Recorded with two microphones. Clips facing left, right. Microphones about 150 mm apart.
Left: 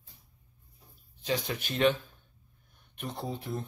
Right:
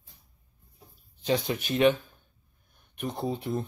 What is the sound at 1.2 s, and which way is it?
Speech, 20° right (ahead or behind).